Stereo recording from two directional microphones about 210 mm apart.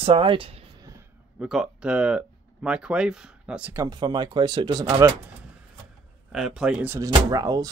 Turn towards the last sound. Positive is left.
turn(degrees=-15)  # may be behind; listen again after turning